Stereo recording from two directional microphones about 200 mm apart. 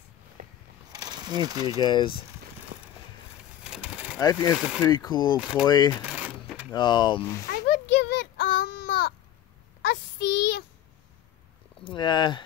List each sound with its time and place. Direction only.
0.4 s a sound: 35° right (ahead or behind)
0.9 s a sound: 20° right (ahead or behind)
1.8 s speech: 20° left (ahead or behind)
2.7 s vehicle: 45° right (ahead or behind)
3.6 s pigeon: 5° right (ahead or behind)
4.2 s speech: 20° left (ahead or behind)
6.0 s typewriter: 10° right (ahead or behind)
6.7 s speech: 20° left (ahead or behind)
7.4 s a sound: 55° left (ahead or behind)
11.8 s speech: 25° left (ahead or behind)